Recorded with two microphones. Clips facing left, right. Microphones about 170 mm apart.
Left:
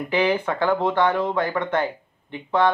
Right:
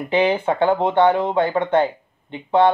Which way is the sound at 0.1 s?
25° right (ahead or behind).